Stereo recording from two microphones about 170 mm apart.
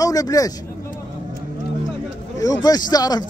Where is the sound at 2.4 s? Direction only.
20° left (ahead or behind).